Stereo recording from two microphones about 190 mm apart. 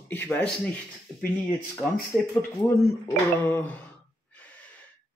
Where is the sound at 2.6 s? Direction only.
15° left (ahead or behind).